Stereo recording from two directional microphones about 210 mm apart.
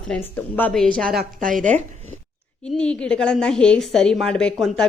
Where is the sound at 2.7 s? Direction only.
5° left (ahead or behind).